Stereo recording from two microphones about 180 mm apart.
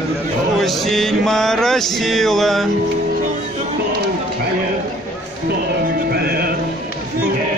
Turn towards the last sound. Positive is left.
turn(degrees=-60)  # may be behind; listen again after turning